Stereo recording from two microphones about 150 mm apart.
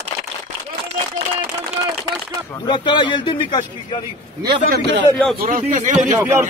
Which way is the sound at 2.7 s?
30° left (ahead or behind).